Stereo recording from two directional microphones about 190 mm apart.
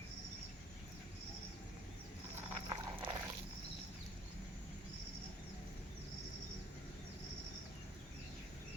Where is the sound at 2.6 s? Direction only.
25° right (ahead or behind).